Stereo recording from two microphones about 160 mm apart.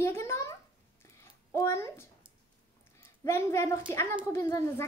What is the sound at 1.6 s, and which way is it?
Speech, 15° left (ahead or behind).